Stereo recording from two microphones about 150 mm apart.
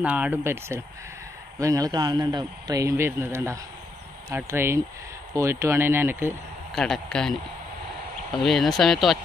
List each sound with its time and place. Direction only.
0.0 s a man's voice: 10° right (ahead or behind)
6.7 s speech: 5° left (ahead or behind)
8.4 s speech: centre (ahead or behind)